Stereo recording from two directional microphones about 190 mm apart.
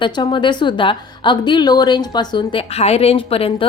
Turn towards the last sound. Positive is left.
turn(degrees=30)  # may be behind; listen again after turning